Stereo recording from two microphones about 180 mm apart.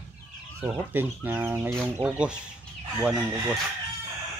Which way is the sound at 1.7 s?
5° right (ahead or behind).